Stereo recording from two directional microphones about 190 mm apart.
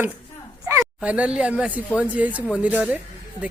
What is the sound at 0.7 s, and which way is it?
Speech, 10° right (ahead or behind).